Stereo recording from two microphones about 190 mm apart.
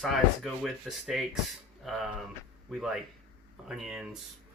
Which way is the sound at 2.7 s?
5° right (ahead or behind).